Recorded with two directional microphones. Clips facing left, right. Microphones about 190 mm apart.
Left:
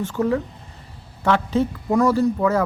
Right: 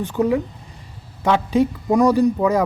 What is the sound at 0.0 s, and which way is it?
Speech, 15° right (ahead or behind).